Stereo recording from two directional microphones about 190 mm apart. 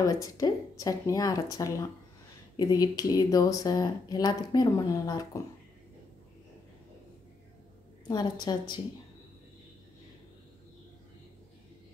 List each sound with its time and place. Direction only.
0.0 s speech: 20° left (ahead or behind)
8.1 s speech: 20° left (ahead or behind)